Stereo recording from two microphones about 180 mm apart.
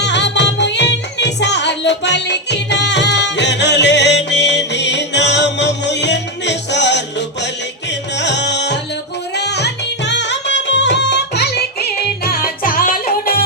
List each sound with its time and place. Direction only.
0.0 s music: 75° left (ahead or behind); by 13.4 s 55° left (ahead or behind)